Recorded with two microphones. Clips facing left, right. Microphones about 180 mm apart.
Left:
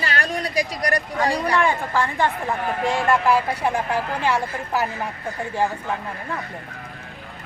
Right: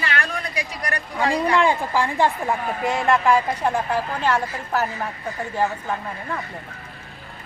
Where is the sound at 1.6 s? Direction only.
10° right (ahead or behind).